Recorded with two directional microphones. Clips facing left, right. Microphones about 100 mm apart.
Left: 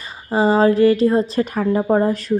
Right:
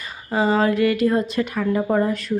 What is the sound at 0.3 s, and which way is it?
A woman's voice, 30° left (ahead or behind).